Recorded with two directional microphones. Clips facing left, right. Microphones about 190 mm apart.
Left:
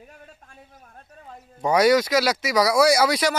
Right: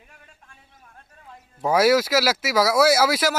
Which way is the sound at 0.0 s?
40° left (ahead or behind).